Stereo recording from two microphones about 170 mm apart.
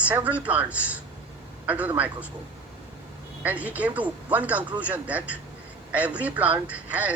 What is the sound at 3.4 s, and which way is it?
A woman's voice, 10° right (ahead or behind).